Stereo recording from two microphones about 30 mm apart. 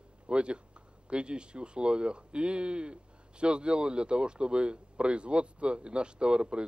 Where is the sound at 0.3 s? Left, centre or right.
Right.